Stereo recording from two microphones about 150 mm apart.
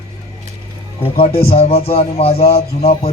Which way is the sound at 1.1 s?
40° left (ahead or behind).